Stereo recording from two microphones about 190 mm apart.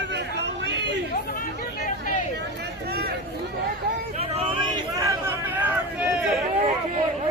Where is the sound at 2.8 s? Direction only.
55° right (ahead or behind).